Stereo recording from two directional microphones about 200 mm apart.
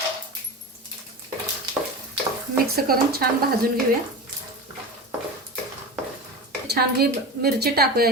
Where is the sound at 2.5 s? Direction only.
50° right (ahead or behind).